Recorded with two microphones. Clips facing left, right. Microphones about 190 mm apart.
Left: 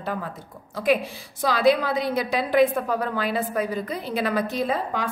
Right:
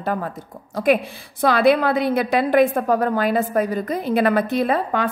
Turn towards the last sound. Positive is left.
turn(degrees=-60)  # may be behind; listen again after turning